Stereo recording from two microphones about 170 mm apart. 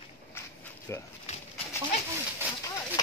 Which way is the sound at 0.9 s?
15° left (ahead or behind).